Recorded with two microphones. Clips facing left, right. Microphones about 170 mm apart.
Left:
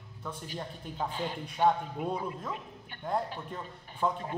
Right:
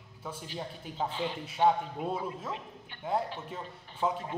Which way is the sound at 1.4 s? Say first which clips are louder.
Right 1 dB; 5° right (ahead or behind).